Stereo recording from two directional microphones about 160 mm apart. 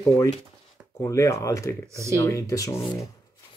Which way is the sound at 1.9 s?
20° right (ahead or behind).